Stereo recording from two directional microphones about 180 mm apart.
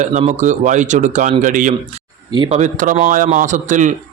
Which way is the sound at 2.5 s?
45° right (ahead or behind).